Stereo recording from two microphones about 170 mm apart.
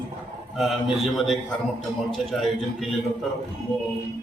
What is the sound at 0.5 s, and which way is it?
A man's voice, centre (ahead or behind).